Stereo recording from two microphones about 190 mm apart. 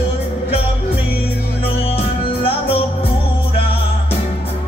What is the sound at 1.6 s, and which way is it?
Music, 30° left (ahead or behind).